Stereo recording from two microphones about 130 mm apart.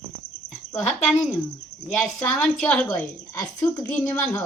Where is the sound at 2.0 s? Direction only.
5° left (ahead or behind).